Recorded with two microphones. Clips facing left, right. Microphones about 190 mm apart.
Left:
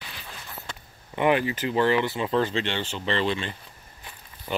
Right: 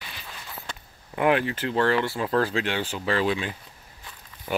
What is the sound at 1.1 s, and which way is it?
Speech, centre (ahead or behind).